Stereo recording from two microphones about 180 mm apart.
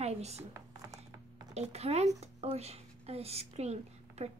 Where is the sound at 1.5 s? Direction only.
35° right (ahead or behind).